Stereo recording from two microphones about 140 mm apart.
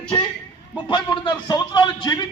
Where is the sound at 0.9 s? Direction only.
30° left (ahead or behind).